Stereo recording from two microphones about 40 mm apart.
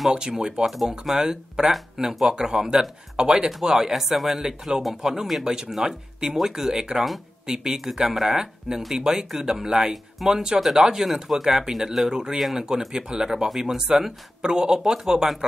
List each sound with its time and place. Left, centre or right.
0.1 s speech: centre
0.7 s speech: centre
4.4 s speech: centre
12.9 s speech: centre